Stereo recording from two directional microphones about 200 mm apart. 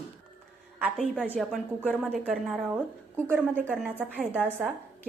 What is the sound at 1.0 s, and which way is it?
A woman's voice, 5° right (ahead or behind).